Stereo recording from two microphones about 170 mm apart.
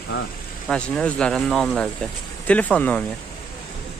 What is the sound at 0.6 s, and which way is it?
Speech, 5° left (ahead or behind).